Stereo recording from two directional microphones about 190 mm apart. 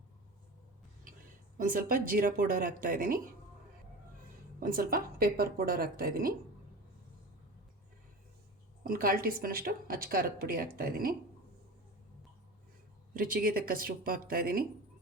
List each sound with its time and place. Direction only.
1.5 s speech: 45° right (ahead or behind)
4.6 s speech: 50° right (ahead or behind)
8.8 s speech: 50° right (ahead or behind)
13.1 s speech: 50° right (ahead or behind)